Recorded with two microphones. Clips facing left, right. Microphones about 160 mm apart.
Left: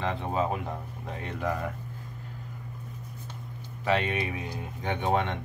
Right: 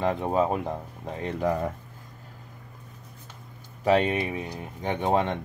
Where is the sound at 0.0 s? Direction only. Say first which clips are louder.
Right 5 dB; 45° right (ahead or behind).